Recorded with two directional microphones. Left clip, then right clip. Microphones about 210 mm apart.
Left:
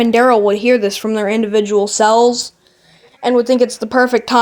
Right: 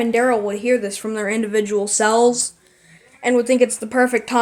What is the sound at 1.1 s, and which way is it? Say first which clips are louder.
A woman's voice: left 4 dB; 25° left (ahead or behind).